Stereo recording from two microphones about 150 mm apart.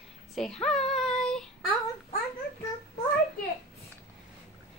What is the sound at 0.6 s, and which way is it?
Child singing, 5° left (ahead or behind).